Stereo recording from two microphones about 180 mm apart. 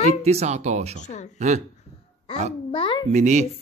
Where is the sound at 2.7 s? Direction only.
25° left (ahead or behind).